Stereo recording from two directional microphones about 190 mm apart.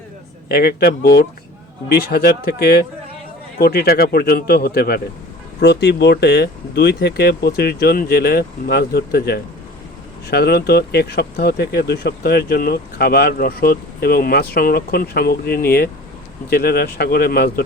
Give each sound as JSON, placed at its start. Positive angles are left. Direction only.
{"t": 0.4, "sound": "speech", "side_deg": 55}